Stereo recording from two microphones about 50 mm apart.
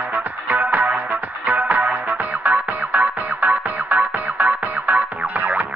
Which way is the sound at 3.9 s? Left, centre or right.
Right.